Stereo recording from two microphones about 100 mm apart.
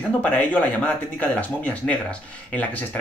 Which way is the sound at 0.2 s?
15° left (ahead or behind).